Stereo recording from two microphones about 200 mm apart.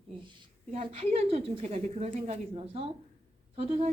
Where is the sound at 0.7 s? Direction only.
30° right (ahead or behind).